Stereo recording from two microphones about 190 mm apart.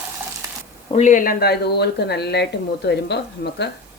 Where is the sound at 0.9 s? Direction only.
40° left (ahead or behind).